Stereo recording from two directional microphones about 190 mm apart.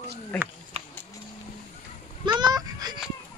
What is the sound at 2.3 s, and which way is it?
Honk, 20° right (ahead or behind).